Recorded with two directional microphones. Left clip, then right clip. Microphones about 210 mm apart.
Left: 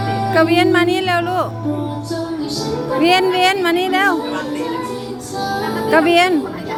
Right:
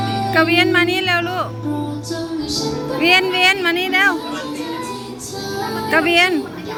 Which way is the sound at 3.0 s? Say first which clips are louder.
Even; 20° left (ahead or behind).